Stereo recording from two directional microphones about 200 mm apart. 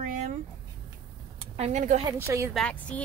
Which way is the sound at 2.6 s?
5° left (ahead or behind).